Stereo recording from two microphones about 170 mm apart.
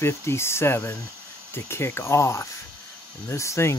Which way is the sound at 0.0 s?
15° left (ahead or behind).